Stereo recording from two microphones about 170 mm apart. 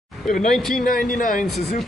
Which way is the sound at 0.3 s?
Centre (ahead or behind).